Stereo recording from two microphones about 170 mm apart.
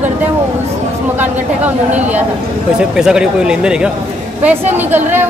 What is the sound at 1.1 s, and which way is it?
A woman's voice, 10° right (ahead or behind).